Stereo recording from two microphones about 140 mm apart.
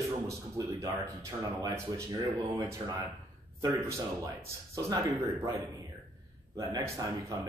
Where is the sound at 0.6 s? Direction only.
25° right (ahead or behind).